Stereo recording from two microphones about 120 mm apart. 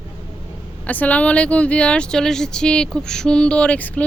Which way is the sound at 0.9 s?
15° left (ahead or behind).